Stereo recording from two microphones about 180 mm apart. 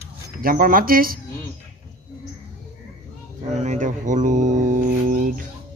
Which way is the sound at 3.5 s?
40° right (ahead or behind).